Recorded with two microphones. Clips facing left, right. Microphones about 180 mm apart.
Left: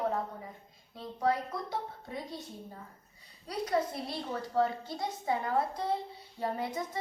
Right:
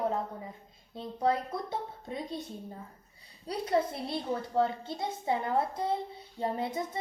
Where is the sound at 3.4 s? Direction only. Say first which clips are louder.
Right 2 dB; 25° right (ahead or behind).